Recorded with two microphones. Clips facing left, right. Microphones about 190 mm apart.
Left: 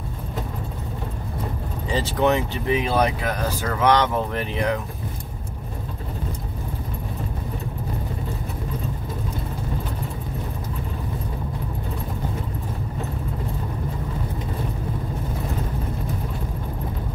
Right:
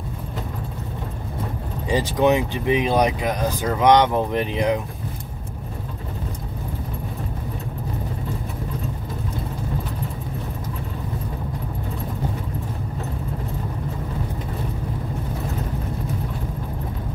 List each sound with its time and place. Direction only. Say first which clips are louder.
1.9 s speech: right 2 dB; 15° right (ahead or behind)